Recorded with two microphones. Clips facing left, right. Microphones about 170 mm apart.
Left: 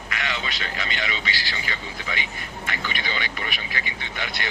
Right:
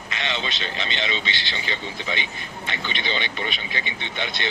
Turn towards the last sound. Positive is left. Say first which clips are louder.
# right 2 dB
turn(degrees=-25)  # may be behind; listen again after turning